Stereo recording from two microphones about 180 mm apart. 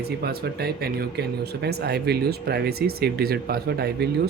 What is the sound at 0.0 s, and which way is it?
Speech, 60° right (ahead or behind).